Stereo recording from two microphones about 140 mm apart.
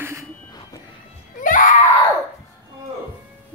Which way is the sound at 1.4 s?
75° left (ahead or behind).